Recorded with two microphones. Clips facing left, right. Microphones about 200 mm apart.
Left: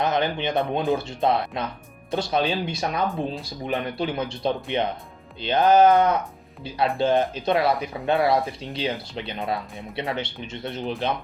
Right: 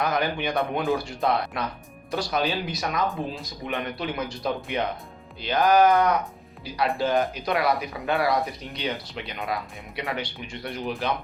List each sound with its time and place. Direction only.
0.0 s speech: 25° left (ahead or behind)